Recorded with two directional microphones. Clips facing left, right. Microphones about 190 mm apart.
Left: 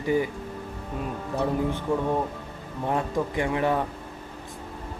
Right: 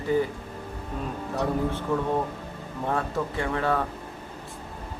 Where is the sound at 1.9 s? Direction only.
15° left (ahead or behind).